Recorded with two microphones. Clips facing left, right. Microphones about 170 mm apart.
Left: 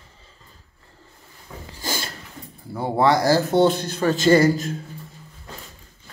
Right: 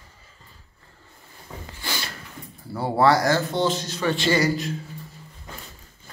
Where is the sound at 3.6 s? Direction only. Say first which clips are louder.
Left 5 dB; 55° left (ahead or behind).